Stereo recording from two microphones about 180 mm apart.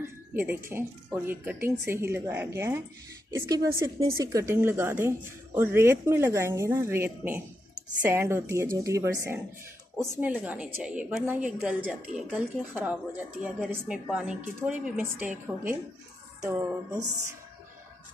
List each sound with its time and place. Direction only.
0.0 s a woman's voice: 15° right (ahead or behind)